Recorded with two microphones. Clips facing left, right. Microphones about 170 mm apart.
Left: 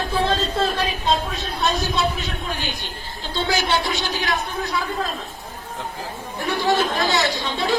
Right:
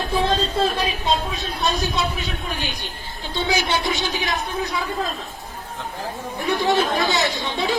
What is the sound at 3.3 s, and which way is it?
A man's voice, 20° right (ahead or behind).